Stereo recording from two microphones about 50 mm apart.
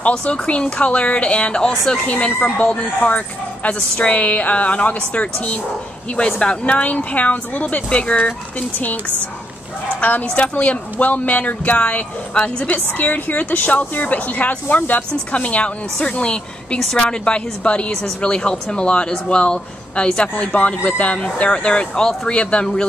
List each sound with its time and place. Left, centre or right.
0.0 s speech: left
9.9 s speech: left